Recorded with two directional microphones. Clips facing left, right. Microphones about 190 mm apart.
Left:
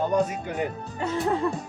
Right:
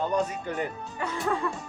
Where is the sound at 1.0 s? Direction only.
25° left (ahead or behind).